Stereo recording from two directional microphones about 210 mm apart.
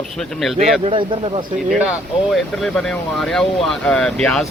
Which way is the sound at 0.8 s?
25° right (ahead or behind).